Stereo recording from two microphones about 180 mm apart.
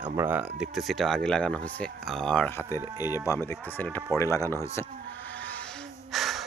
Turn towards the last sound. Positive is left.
turn(degrees=0)  # may be behind; listen again after turning